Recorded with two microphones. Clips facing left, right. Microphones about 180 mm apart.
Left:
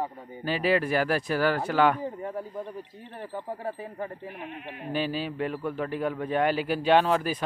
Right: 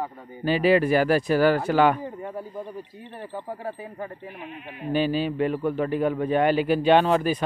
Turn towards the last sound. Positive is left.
turn(degrees=5)  # may be behind; listen again after turning